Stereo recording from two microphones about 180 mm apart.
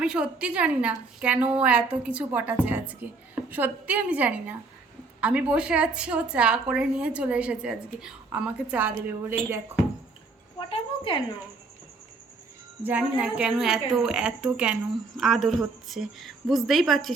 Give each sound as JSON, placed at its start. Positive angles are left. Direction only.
{"t": 0.0, "sound": "a woman's voice", "side_deg": -5}
{"t": 10.6, "sound": "a woman's voice", "side_deg": 30}
{"t": 12.8, "sound": "a woman's voice", "side_deg": -10}